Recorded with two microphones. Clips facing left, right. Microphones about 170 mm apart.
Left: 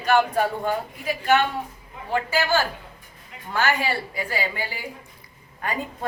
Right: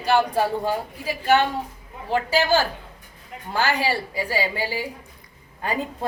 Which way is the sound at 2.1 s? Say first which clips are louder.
Right 2 dB; 35° right (ahead or behind).